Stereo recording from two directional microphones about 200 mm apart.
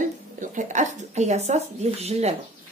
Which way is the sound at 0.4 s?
40° right (ahead or behind).